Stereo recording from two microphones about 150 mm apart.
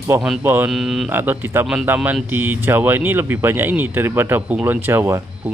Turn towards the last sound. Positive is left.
turn(degrees=-15)  # may be behind; listen again after turning